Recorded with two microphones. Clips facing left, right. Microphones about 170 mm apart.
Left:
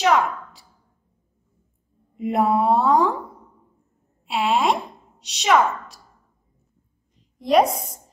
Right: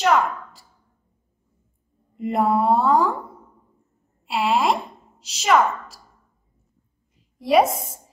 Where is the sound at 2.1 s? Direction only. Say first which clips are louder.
Even; centre (ahead or behind).